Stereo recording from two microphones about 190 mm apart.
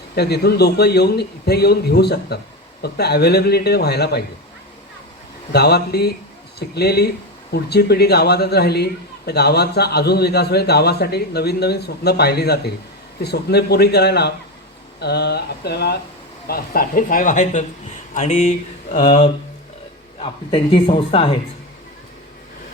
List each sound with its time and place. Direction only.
0.2 s speech: 55° left (ahead or behind)
5.5 s speech: 60° left (ahead or behind); by 18.9 s 35° left (ahead or behind)
20.1 s speech: 30° left (ahead or behind)